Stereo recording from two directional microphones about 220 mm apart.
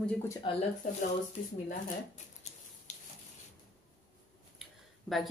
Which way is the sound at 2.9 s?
30° left (ahead or behind).